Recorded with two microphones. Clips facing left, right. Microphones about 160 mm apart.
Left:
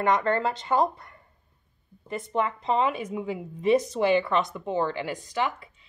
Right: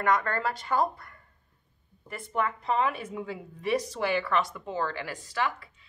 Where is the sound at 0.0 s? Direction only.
25° left (ahead or behind).